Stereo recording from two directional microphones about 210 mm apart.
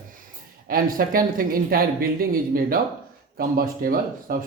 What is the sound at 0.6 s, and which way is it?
Speech, 45° right (ahead or behind).